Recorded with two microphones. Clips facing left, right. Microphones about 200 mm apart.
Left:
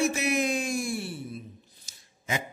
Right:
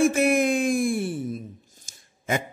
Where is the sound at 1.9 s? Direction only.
50° right (ahead or behind).